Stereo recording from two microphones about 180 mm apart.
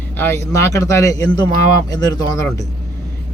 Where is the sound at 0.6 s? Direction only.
15° left (ahead or behind).